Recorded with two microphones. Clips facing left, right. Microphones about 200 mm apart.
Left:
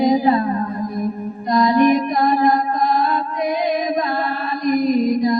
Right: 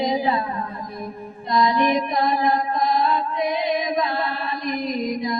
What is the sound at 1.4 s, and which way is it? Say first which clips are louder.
Music: left 5 dB; 45° left (ahead or behind).